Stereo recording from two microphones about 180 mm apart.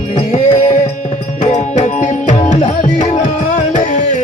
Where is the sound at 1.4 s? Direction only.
40° left (ahead or behind).